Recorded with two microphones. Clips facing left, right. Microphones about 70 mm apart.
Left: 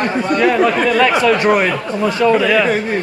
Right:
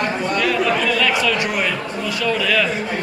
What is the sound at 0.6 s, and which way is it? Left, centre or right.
Speech, left.